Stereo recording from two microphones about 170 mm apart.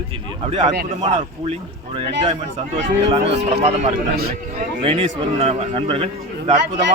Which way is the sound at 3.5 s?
40° right (ahead or behind).